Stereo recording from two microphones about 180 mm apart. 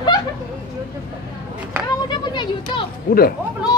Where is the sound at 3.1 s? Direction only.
50° left (ahead or behind).